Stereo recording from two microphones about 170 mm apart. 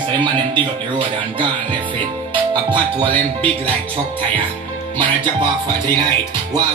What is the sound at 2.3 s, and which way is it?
Music, 30° right (ahead or behind).